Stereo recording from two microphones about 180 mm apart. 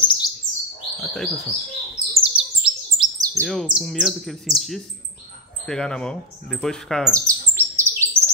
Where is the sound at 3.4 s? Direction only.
Centre (ahead or behind).